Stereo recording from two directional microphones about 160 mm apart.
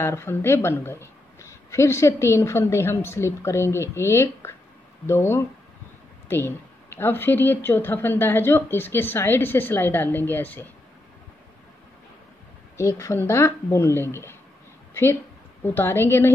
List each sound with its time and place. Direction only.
0.0 s speech: 15° left (ahead or behind)
12.7 s speech: 20° left (ahead or behind)
15.6 s speech: 15° left (ahead or behind)